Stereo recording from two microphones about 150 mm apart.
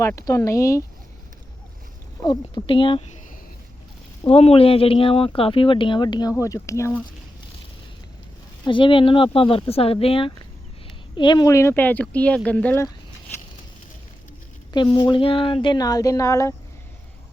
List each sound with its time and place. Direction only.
0.0 s speech: 20° left (ahead or behind)
2.2 s speech: 30° left (ahead or behind)
4.2 s speech: 40° left (ahead or behind); by 7.0 s 20° left (ahead or behind)
8.6 s speech: 35° left (ahead or behind); by 12.8 s 10° left (ahead or behind)
14.7 s speech: 30° left (ahead or behind)